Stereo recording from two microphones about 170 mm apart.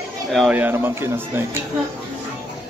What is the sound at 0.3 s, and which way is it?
Speech, centre (ahead or behind).